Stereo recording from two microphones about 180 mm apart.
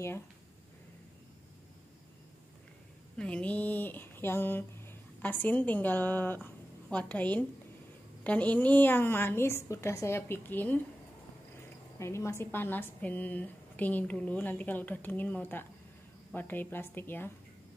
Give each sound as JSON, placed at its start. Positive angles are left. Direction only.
{"t": 3.2, "sound": "a woman's voice", "side_deg": 5}
{"t": 12.0, "sound": "a woman's voice", "side_deg": 15}